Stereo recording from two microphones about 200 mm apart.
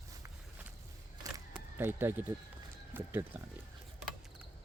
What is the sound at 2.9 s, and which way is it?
Speech, 10° right (ahead or behind).